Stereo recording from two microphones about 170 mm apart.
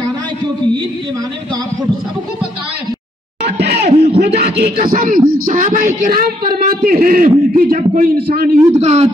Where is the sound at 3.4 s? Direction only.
75° right (ahead or behind).